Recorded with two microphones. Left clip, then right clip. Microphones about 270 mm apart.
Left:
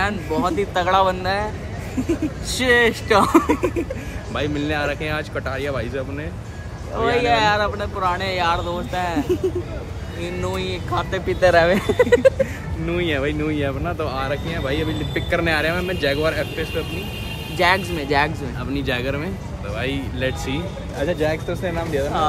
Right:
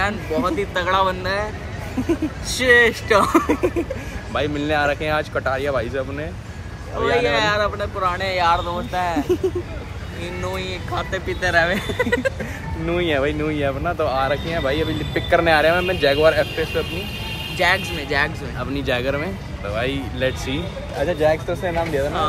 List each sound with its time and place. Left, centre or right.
0.5 s speech: centre
2.5 s speech: centre
3.4 s speech: centre
7.2 s speech: centre
10.2 s speech: centre
12.8 s speech: centre
17.6 s speech: left
18.6 s speech: centre